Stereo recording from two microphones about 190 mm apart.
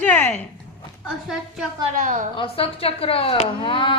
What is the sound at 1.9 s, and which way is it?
Speech, 45° right (ahead or behind).